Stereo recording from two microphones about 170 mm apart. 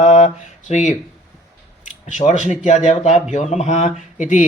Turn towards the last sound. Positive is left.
turn(degrees=45)  # may be behind; listen again after turning